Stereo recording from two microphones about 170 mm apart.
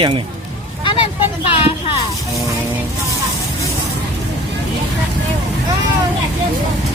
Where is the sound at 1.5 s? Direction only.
35° left (ahead or behind).